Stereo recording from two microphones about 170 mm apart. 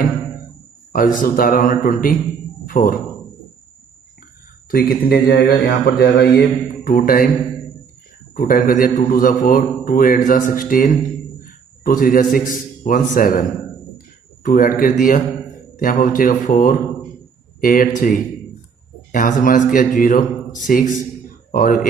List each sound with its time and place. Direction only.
0.9 s a man's voice: 55° left (ahead or behind)
2.6 s a sound: 55° left (ahead or behind)
4.6 s a man's voice: 60° left (ahead or behind)
6.2 s a man's voice: 10° left (ahead or behind)
6.9 s a man's voice: 60° left (ahead or behind)
8.4 s a man's voice: 55° left (ahead or behind)
14.4 s a man's voice: 55° left (ahead or behind)
19.1 s a man's voice: 50° left (ahead or behind)